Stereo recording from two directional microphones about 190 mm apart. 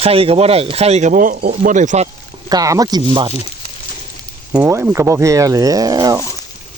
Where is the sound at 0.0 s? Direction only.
30° right (ahead or behind).